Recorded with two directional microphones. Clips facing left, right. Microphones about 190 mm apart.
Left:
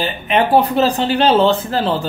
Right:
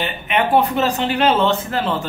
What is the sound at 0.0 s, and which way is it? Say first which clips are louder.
Speech: left 3 dB; 35° left (ahead or behind).